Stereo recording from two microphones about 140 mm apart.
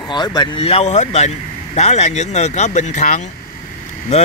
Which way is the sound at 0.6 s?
50° left (ahead or behind).